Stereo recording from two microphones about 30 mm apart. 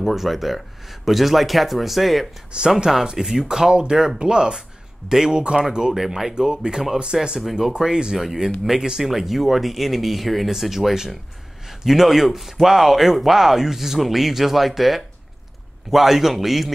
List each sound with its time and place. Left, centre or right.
0.0 s speech: centre
2.5 s speech: right
2.9 s speech: centre
5.9 s speech: centre
6.3 s speech: right
7.1 s speech: centre
7.8 s speech: right; by 16.7 s centre